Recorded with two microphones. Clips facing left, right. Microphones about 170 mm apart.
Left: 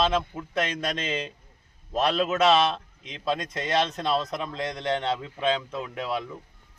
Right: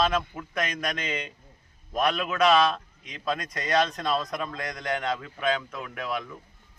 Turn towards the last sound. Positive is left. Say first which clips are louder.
# left 2 dB
turn(degrees=30)  # may be behind; listen again after turning